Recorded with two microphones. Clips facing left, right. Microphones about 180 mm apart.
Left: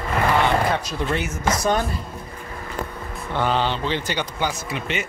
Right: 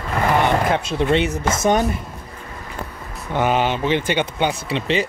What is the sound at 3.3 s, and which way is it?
Speech, 15° right (ahead or behind).